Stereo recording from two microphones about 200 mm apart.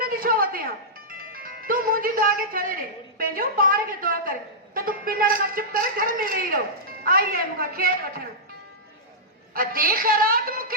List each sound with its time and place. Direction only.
0.0 s a sound: 45° right (ahead or behind)
1.3 s a man's voice: 45° right (ahead or behind)
9.6 s a man's voice: 45° right (ahead or behind)